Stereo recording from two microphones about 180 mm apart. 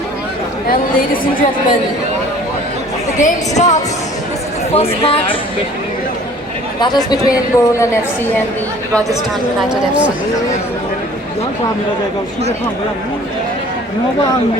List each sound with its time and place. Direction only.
0.7 s a woman's voice: 50° left (ahead or behind)
3.2 s speech: 40° left (ahead or behind)
6.7 s a woman's voice: 25° left (ahead or behind)
9.6 s speech: 5° right (ahead or behind)